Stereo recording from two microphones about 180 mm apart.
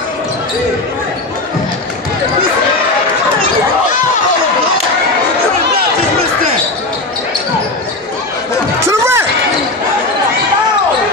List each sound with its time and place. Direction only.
8.8 s crowd: 15° right (ahead or behind)